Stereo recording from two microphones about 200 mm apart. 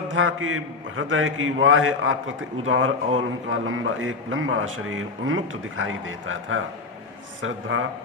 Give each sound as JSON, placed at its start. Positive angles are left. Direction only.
{"t": 0.1, "sound": "speech", "side_deg": -75}
{"t": 7.7, "sound": "speech", "side_deg": -90}